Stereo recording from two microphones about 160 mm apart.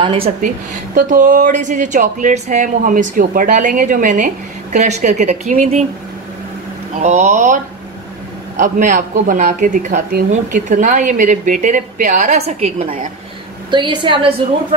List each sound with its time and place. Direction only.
0.0 s a woman's voice: 35° right (ahead or behind)
0.9 s a woman's voice: 60° right (ahead or behind)
7.0 s a woman's voice: 45° right (ahead or behind)
13.7 s a woman's voice: 30° right (ahead or behind)